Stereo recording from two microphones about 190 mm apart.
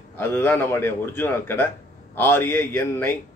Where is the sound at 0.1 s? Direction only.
10° left (ahead or behind).